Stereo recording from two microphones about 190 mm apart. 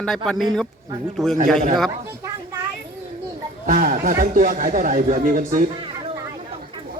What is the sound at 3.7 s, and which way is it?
Speech, 40° right (ahead or behind).